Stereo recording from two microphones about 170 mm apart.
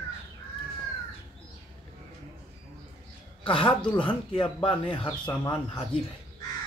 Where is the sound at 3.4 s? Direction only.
30° left (ahead or behind).